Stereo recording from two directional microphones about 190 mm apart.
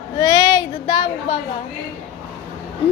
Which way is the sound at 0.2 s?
20° left (ahead or behind).